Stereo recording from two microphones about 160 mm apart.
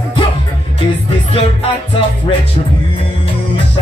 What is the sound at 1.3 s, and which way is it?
Music, 35° left (ahead or behind).